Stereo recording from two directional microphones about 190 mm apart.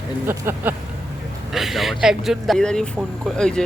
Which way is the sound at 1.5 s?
Centre (ahead or behind).